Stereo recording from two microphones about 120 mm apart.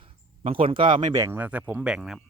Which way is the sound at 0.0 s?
50° right (ahead or behind).